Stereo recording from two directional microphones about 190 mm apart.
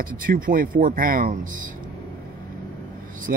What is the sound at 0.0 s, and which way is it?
Speech, 45° right (ahead or behind).